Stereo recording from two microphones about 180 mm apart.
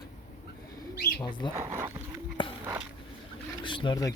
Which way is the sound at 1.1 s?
25° left (ahead or behind).